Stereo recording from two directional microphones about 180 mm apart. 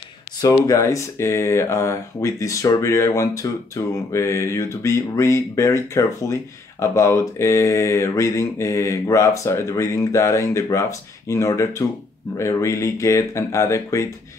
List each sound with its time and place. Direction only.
0.4 s speech: 20° left (ahead or behind)